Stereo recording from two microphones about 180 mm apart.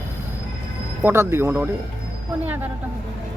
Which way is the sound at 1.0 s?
15° right (ahead or behind).